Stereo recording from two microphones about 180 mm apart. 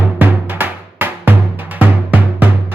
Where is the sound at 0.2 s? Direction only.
10° right (ahead or behind).